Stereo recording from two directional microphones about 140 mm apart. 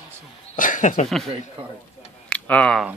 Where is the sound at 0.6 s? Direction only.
70° left (ahead or behind).